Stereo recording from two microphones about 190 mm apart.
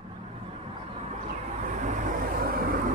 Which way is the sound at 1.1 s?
40° right (ahead or behind).